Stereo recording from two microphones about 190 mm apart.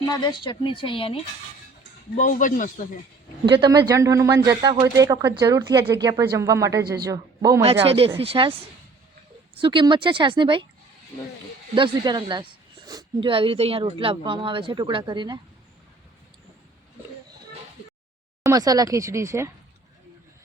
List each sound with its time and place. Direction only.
0.1 s speech: 25° left (ahead or behind)
2.1 s a man's voice: 40° left (ahead or behind)
3.4 s a man's voice: 25° right (ahead or behind)
7.9 s speech: 30° right (ahead or behind)
9.6 s speech: 25° right (ahead or behind)
11.7 s speech: 25° right (ahead or behind)
18.4 s a man's voice: 20° right (ahead or behind)